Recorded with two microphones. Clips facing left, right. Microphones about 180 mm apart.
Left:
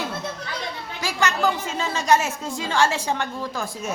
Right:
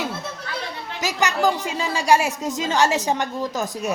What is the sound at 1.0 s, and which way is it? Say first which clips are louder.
Speech: right 2 dB; 15° right (ahead or behind).